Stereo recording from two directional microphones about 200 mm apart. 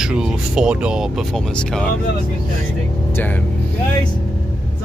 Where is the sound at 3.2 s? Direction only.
10° left (ahead or behind).